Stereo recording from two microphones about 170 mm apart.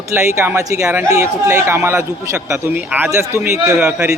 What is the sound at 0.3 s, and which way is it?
Speech, 15° right (ahead or behind).